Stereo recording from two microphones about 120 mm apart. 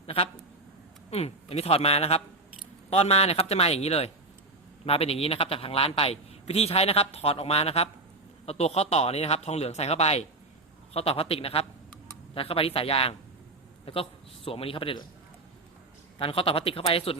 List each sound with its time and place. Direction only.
0.0 s a man's voice: 50° left (ahead or behind)
16.1 s speech: 50° left (ahead or behind)